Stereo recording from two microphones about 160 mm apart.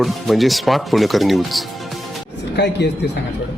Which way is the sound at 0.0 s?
Centre (ahead or behind).